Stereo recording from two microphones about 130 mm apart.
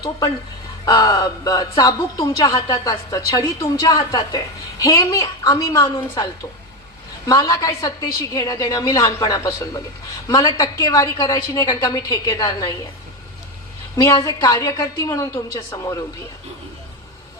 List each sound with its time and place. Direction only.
0.9 s speech: 30° left (ahead or behind)
7.3 s speech: 30° left (ahead or behind)
13.9 s speech: 25° left (ahead or behind)